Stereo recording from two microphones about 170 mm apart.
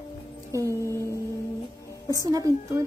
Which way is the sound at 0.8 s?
15° left (ahead or behind).